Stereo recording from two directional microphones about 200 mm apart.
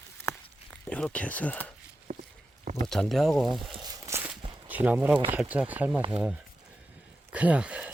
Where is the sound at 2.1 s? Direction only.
35° right (ahead or behind).